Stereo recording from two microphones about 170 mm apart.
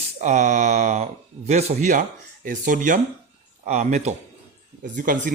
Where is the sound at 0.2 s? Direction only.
45° right (ahead or behind).